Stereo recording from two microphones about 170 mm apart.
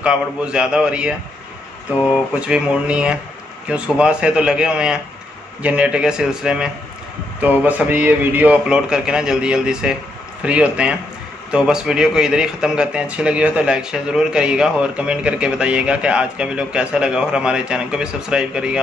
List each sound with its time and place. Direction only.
0.0 s a man's voice: 5° right (ahead or behind)